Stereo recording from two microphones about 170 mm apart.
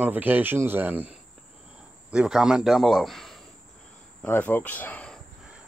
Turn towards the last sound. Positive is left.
turn(degrees=5)  # may be behind; listen again after turning